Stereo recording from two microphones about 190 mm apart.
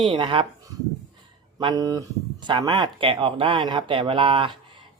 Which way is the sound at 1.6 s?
20° right (ahead or behind).